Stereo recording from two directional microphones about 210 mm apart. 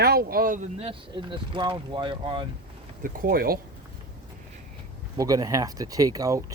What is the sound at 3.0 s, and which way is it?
Speech, 40° right (ahead or behind).